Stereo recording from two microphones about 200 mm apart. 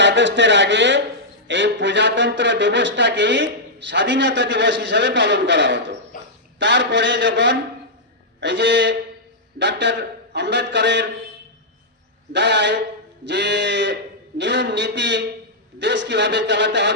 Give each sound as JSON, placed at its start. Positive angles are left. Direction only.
{"t": 0.0, "sound": "speech", "side_deg": -60}
{"t": 12.3, "sound": "speech", "side_deg": -60}